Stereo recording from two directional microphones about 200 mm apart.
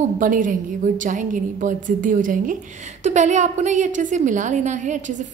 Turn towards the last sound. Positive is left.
turn(degrees=-40)  # may be behind; listen again after turning